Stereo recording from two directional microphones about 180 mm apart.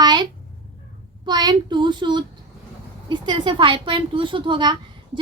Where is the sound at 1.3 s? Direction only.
25° right (ahead or behind).